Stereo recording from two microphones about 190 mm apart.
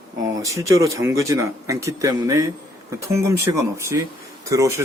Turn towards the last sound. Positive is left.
turn(degrees=-15)  # may be behind; listen again after turning